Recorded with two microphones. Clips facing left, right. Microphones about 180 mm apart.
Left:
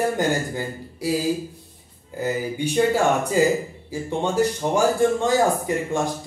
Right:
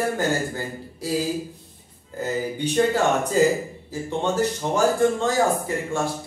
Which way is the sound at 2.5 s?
10° left (ahead or behind).